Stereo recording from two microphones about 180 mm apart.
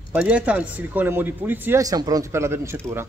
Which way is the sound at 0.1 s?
5° right (ahead or behind).